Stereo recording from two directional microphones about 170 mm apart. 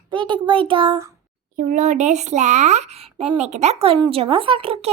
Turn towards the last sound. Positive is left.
turn(degrees=-35)  # may be behind; listen again after turning